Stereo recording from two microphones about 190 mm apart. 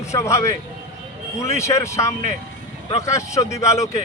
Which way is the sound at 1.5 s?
15° left (ahead or behind).